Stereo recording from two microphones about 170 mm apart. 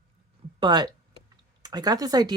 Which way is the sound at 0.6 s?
25° right (ahead or behind).